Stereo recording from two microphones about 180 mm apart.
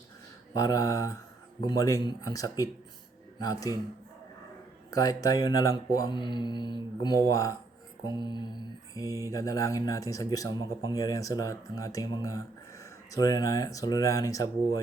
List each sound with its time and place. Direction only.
0.5 s speech: 20° left (ahead or behind)
4.9 s speech: 20° left (ahead or behind)